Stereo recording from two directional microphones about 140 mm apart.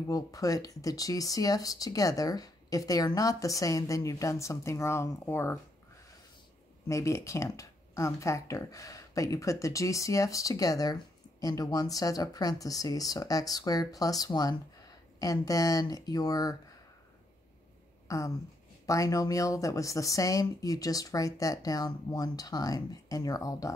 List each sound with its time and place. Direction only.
0.1 s speech: 25° left (ahead or behind)
6.9 s speech: 20° left (ahead or behind)
18.0 s speech: 25° left (ahead or behind)